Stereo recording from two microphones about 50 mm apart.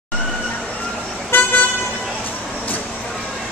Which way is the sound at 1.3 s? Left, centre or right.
Left.